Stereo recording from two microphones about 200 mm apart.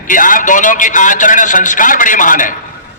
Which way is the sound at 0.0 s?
40° left (ahead or behind).